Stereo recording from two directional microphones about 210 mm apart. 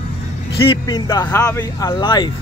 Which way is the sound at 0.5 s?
25° left (ahead or behind).